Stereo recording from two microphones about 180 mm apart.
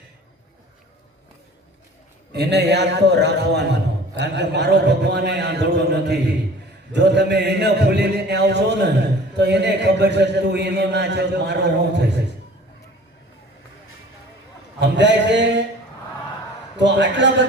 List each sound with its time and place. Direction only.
2.3 s a man's voice: 70° right (ahead or behind)
14.8 s a man's voice: 75° right (ahead or behind)
16.7 s a man's voice: 80° right